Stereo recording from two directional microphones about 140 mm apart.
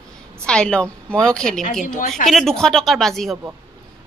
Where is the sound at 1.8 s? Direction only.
75° left (ahead or behind).